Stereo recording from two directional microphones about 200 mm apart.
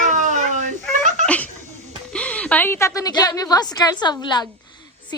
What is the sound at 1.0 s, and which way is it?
Laughter, 40° right (ahead or behind).